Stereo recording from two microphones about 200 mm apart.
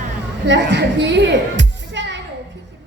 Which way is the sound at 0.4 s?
60° right (ahead or behind).